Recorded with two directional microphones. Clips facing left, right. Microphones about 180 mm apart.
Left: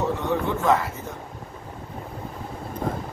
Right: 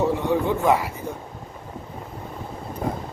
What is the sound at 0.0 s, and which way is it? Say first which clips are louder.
Speech: right 3 dB; 15° right (ahead or behind).